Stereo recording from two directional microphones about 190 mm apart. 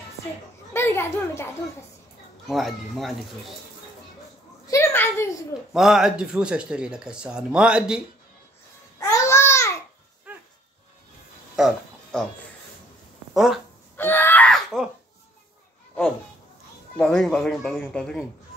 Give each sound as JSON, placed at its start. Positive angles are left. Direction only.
{"t": 0.7, "sound": "a child's voice", "side_deg": 15}
{"t": 2.4, "sound": "speech", "side_deg": 0}
{"t": 4.6, "sound": "a woman's voice", "side_deg": 15}
{"t": 5.7, "sound": "speech", "side_deg": 0}
{"t": 9.0, "sound": "babbling", "side_deg": 15}
{"t": 10.3, "sound": "dog", "side_deg": -10}
{"t": 11.5, "sound": "a sound", "side_deg": 0}
{"t": 13.3, "sound": "a sound", "side_deg": 0}
{"t": 13.9, "sound": "screaming", "side_deg": 10}
{"t": 16.9, "sound": "speech", "side_deg": 5}